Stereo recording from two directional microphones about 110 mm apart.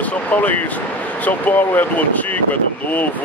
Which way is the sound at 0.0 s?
15° left (ahead or behind).